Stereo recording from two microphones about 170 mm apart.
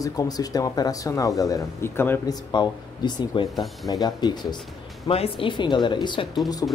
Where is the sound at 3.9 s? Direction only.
25° left (ahead or behind).